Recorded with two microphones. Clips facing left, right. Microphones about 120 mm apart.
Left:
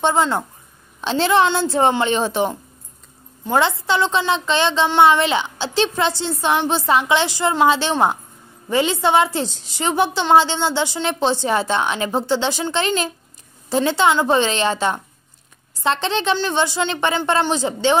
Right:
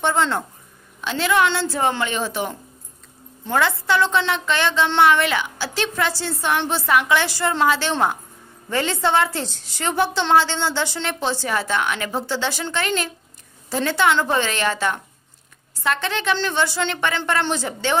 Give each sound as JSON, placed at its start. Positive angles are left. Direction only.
{"t": 0.0, "sound": "a woman's voice", "side_deg": 20}
{"t": 1.0, "sound": "a woman's voice", "side_deg": 30}
{"t": 3.5, "sound": "a woman's voice", "side_deg": 20}